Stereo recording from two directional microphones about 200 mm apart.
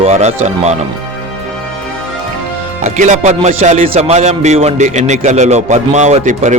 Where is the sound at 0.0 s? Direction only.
30° right (ahead or behind).